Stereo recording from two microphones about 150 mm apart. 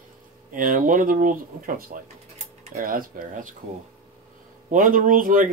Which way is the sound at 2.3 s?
50° right (ahead or behind).